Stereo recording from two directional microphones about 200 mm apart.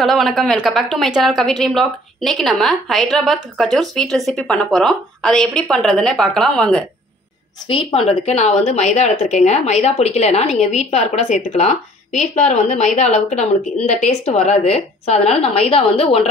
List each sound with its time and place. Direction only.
0.0 s a woman's voice: centre (ahead or behind)
7.6 s a woman's voice: 25° left (ahead or behind)